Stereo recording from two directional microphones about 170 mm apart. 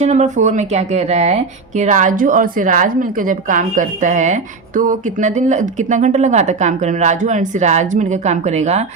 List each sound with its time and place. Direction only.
0.0 s speech: 40° right (ahead or behind)